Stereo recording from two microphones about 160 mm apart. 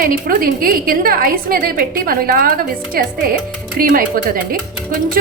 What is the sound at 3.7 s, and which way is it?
Speech, 60° right (ahead or behind).